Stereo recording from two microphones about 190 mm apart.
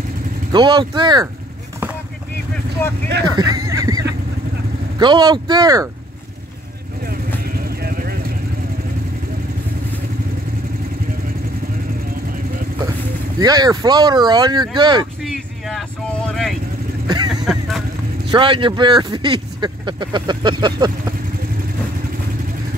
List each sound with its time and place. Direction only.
0.5 s speech: 25° right (ahead or behind)
3.3 s a sound: 20° right (ahead or behind)
4.9 s speech: 25° right (ahead or behind)
7.4 s vehicle: 50° right (ahead or behind)
13.4 s speech: 20° right (ahead or behind)
15.2 s vehicle: centre (ahead or behind)
17.1 s vehicle: 20° right (ahead or behind)
17.5 s vehicle: centre (ahead or behind)
18.3 s speech: 25° right (ahead or behind)